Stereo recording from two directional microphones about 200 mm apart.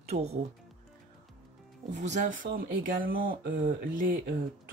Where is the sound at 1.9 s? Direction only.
35° right (ahead or behind).